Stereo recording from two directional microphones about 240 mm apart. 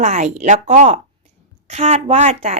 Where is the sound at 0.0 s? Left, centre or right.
Right.